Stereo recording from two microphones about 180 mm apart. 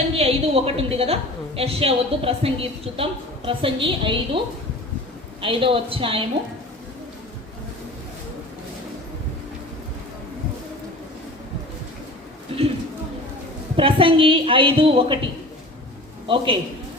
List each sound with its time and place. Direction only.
0.2 s a woman's voice: 35° right (ahead or behind)
5.4 s a woman's voice: 30° right (ahead or behind)
12.5 s a sound: 30° right (ahead or behind)
13.7 s a woman's voice: 30° right (ahead or behind)
16.2 s a man's voice: 30° right (ahead or behind)